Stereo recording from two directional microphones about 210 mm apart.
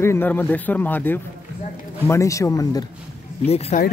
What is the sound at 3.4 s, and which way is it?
Speech, 30° left (ahead or behind).